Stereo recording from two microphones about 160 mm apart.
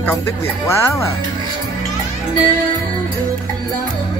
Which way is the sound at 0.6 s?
20° left (ahead or behind).